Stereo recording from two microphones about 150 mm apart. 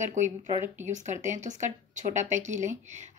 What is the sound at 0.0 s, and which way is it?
Speech, 55° right (ahead or behind).